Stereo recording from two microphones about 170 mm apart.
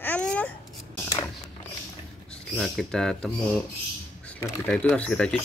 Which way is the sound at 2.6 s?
Centre (ahead or behind).